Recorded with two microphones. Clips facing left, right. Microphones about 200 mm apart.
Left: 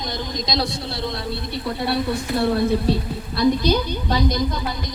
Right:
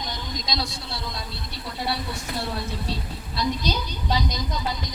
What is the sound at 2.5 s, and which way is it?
A woman's voice, 60° left (ahead or behind).